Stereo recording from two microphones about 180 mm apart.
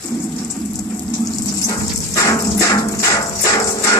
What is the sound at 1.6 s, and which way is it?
Music, 20° left (ahead or behind).